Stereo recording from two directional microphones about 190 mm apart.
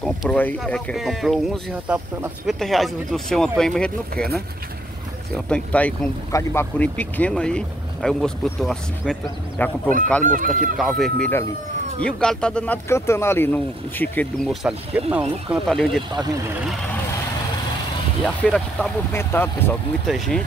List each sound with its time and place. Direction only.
0.0 s speech: 5° left (ahead or behind)
5.3 s speech: 5° left (ahead or behind)
10.2 s speech: 45° right (ahead or behind)
10.8 s speech: centre (ahead or behind)
18.2 s speech: 5° left (ahead or behind)